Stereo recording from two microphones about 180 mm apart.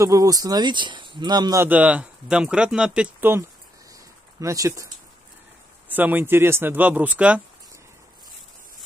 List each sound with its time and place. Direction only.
0.0 s speech: 20° right (ahead or behind)
5.9 s speech: 10° right (ahead or behind)